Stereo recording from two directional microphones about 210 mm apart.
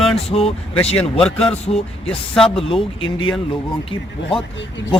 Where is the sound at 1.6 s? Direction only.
30° left (ahead or behind).